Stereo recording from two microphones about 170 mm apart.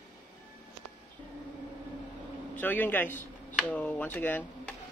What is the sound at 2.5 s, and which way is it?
A man's voice, 10° left (ahead or behind).